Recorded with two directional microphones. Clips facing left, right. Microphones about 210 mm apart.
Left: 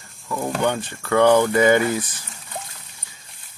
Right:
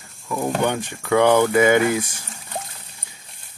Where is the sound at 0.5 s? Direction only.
15° right (ahead or behind).